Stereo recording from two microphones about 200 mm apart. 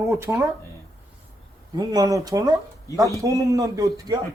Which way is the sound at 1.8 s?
20° right (ahead or behind).